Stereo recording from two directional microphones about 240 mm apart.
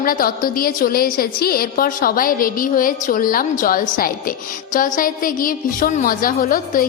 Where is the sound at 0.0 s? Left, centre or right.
Left.